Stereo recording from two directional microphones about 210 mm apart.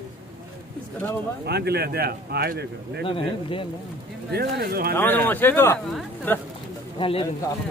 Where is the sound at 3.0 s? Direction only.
25° left (ahead or behind).